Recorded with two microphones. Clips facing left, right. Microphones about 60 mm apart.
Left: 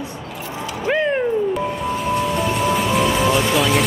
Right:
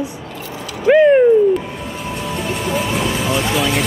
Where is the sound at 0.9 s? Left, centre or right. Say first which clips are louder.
Right 10 dB; centre.